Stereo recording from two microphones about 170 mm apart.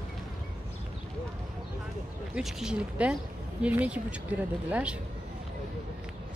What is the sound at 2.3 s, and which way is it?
A woman's voice, 5° right (ahead or behind).